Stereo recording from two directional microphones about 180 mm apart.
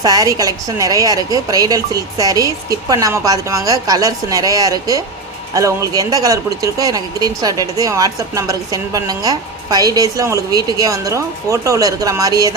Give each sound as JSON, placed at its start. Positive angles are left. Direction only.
{"t": 0.0, "sound": "speech", "side_deg": -20}